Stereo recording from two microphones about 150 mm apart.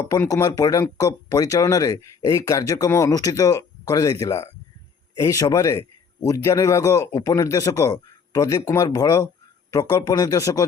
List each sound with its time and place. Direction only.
0.0 s speech: 20° left (ahead or behind)